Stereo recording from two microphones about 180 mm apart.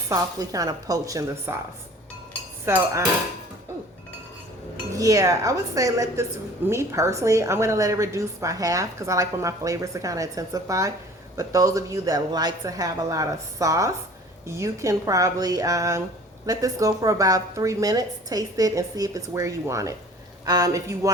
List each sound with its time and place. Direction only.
0.1 s a woman's voice: 20° right (ahead or behind)
2.6 s a woman's voice: 15° right (ahead or behind)
4.9 s a woman's voice: 20° right (ahead or behind)